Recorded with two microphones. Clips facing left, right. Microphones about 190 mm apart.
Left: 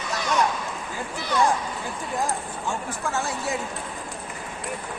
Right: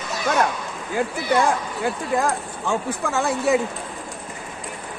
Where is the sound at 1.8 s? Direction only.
75° right (ahead or behind).